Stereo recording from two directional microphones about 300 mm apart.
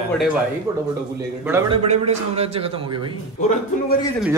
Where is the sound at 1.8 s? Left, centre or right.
Right.